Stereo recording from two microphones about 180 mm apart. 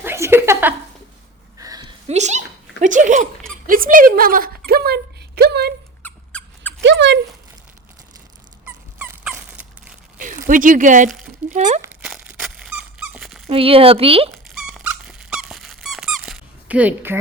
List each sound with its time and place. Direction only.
0.0 s speech: 15° right (ahead or behind)
1.5 s a sound: 20° right (ahead or behind)
2.0 s speech: 40° right (ahead or behind); by 5.7 s 65° right (ahead or behind)
6.0 s a sound: 10° left (ahead or behind)
6.8 s speech: 80° right
8.6 s dog: 5° right (ahead or behind)
10.2 s speech: 45° right (ahead or behind)
11.8 s dog: 5° right (ahead or behind)
13.5 s speech: 30° right (ahead or behind)
14.3 s squeak: centre (ahead or behind)